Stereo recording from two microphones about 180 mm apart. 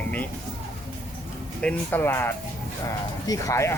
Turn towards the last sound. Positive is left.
turn(degrees=15)  # may be behind; listen again after turning